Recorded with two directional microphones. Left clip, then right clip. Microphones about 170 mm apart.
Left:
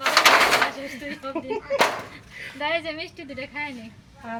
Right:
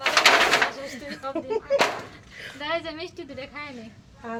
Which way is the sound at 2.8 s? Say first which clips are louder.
Left 2 dB; 20° right (ahead or behind).